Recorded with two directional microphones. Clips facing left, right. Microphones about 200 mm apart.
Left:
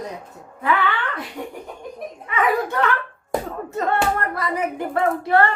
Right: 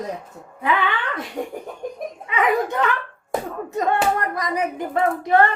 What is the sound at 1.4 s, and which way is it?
Laughter, 40° right (ahead or behind).